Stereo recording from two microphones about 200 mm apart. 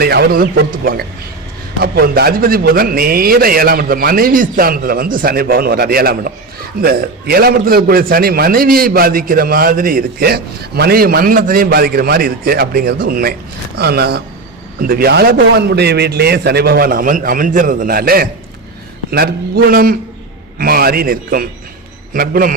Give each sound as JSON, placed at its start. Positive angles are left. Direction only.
{"t": 0.0, "sound": "a man's voice", "side_deg": -50}